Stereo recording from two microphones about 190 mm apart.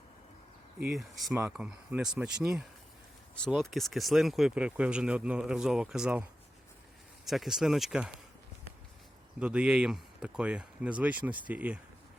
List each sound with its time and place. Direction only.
0.9 s speech: centre (ahead or behind)
7.3 s speech: centre (ahead or behind)
9.4 s speech: 5° right (ahead or behind)